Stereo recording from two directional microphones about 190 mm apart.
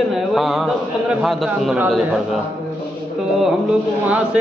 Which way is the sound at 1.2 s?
Centre (ahead or behind).